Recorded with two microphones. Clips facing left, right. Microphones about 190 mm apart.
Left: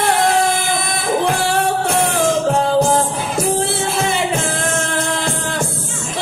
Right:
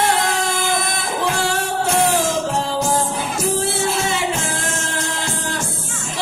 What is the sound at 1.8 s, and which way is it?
Music, 55° left (ahead or behind).